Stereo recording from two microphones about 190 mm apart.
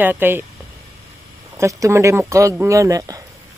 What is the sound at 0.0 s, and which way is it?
Speech, 10° right (ahead or behind).